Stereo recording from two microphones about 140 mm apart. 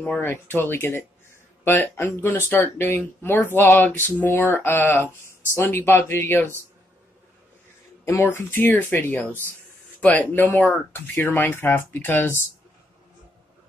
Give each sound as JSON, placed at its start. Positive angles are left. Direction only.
{"t": 0.0, "sound": "speech", "side_deg": 15}
{"t": 8.0, "sound": "speech", "side_deg": 15}